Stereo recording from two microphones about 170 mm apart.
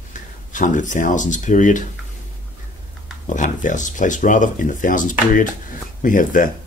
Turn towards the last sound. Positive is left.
turn(degrees=50)  # may be behind; listen again after turning